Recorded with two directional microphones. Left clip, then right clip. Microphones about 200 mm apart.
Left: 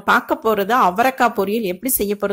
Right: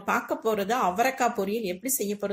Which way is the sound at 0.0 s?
45° left (ahead or behind).